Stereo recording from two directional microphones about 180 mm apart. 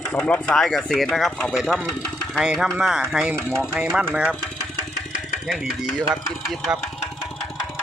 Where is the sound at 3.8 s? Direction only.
5° right (ahead or behind).